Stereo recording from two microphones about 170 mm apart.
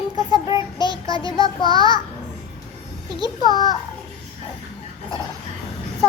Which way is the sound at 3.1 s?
25° left (ahead or behind).